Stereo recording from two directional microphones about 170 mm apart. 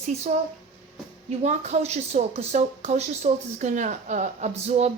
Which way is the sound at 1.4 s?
40° right (ahead or behind).